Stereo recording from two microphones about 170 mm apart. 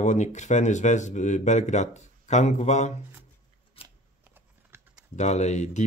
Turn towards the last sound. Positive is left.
turn(degrees=45)  # may be behind; listen again after turning